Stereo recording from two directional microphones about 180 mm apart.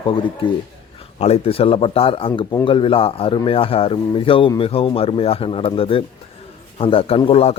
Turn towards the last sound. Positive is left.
turn(degrees=35)  # may be behind; listen again after turning